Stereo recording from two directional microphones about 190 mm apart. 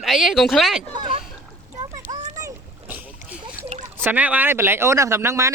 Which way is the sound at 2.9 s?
5° right (ahead or behind).